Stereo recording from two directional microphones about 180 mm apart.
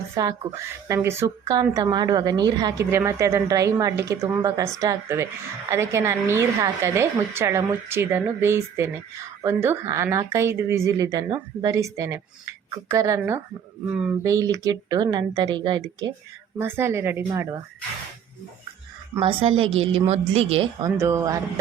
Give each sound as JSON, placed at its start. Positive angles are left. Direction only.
{"t": 0.1, "sound": "a woman's voice", "side_deg": -20}
{"t": 14.3, "sound": "a woman's voice", "side_deg": -20}
{"t": 19.2, "sound": "a woman's voice", "side_deg": -30}
{"t": 20.8, "sound": "a woman's voice", "side_deg": -15}